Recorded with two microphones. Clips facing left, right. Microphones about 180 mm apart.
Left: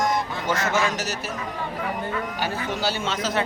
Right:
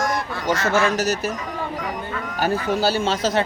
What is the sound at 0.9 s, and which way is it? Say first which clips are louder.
Speech: right 7 dB; 40° right (ahead or behind).